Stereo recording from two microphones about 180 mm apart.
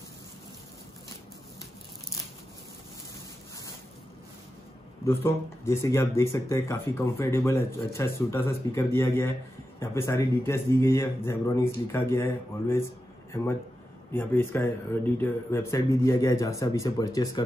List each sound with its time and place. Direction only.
5.0 s a man's voice: 15° left (ahead or behind)